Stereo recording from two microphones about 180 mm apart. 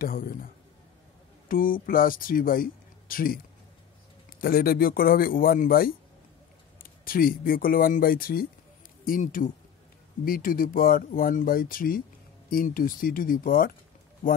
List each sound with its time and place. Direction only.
0.0 s speech: 55° left (ahead or behind)
1.5 s speech: 50° left (ahead or behind)
4.4 s a man's voice: 55° left (ahead or behind)